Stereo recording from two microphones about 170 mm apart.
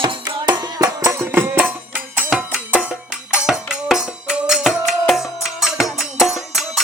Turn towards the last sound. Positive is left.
turn(degrees=0)  # may be behind; listen again after turning